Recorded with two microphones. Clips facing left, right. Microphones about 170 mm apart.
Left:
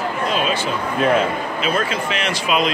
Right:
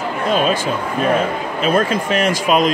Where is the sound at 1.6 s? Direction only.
45° right (ahead or behind).